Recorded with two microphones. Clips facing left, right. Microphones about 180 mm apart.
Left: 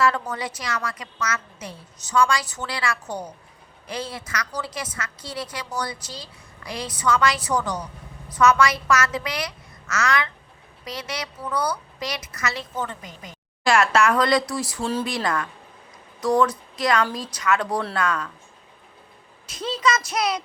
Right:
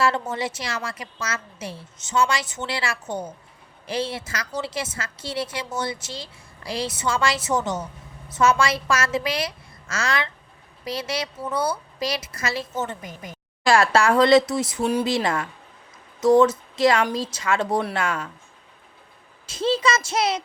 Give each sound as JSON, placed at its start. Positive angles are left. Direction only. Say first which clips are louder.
{"t": 0.0, "sound": "a woman's voice", "louder": "even", "side_deg": -25}
{"t": 19.5, "sound": "a woman's voice", "louder": "right 2 dB", "side_deg": -30}